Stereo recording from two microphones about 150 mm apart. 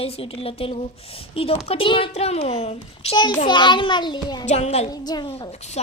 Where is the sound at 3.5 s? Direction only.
30° left (ahead or behind).